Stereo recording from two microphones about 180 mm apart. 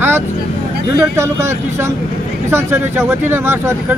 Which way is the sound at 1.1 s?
15° right (ahead or behind).